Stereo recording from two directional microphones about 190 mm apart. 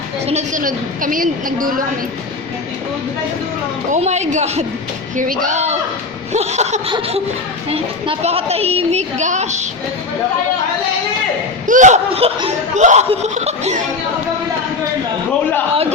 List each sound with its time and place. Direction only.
0.3 s a woman's voice: 40° right (ahead or behind)
3.9 s a woman's voice: 35° right (ahead or behind)
11.6 s speech: 40° right (ahead or behind)